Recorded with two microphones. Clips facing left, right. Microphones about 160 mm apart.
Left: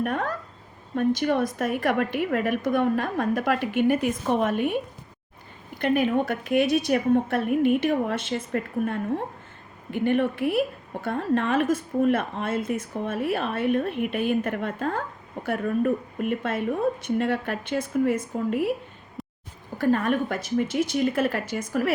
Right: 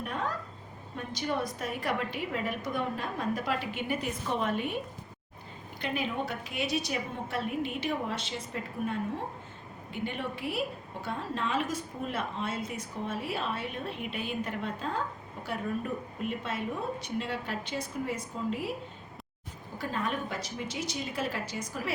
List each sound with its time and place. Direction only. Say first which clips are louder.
0.0 s a woman's voice: left 7 dB; 60° left (ahead or behind)
5.8 s a woman's voice: left 10 dB; 55° left (ahead or behind)
19.8 s a woman's voice: left 11 dB; 60° left (ahead or behind)